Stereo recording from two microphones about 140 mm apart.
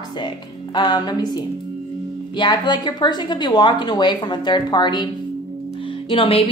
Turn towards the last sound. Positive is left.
turn(degrees=40)  # may be behind; listen again after turning